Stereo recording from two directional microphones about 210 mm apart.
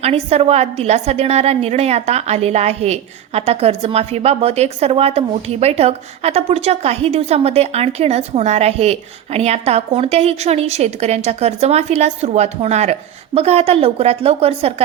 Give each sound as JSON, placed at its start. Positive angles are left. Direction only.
{"t": 0.0, "sound": "a woman's voice", "side_deg": -30}